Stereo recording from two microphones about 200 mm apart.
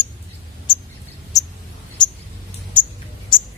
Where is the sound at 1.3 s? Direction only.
15° left (ahead or behind).